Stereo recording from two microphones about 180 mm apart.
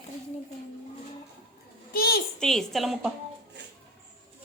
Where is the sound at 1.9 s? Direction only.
60° left (ahead or behind).